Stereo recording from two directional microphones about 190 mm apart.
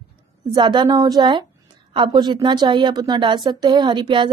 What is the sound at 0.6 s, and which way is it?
A woman's voice, 25° right (ahead or behind).